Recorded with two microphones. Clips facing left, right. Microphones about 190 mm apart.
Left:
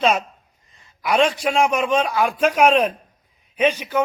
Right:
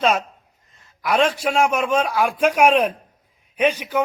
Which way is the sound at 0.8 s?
Centre (ahead or behind).